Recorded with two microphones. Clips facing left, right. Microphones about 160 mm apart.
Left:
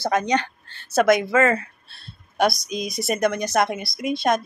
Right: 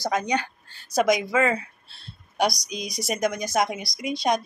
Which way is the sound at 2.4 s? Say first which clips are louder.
Left 5 dB; 55° left (ahead or behind).